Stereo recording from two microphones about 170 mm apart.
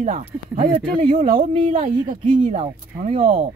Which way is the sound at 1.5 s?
40° right (ahead or behind).